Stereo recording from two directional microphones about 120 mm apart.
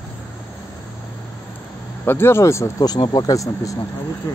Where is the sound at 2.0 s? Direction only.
20° left (ahead or behind).